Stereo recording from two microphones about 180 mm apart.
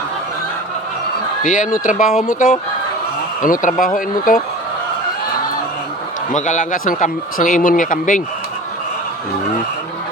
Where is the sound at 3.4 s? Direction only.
45° left (ahead or behind).